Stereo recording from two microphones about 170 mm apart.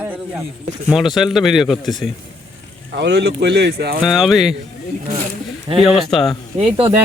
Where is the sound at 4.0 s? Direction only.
Centre (ahead or behind).